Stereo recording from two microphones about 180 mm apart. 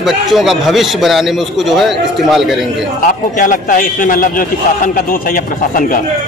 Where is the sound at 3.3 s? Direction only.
50° left (ahead or behind).